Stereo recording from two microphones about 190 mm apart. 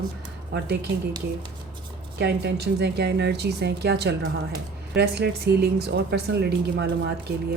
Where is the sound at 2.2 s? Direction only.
60° right (ahead or behind).